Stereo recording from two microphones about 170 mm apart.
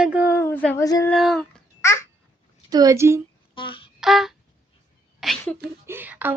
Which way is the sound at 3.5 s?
30° left (ahead or behind).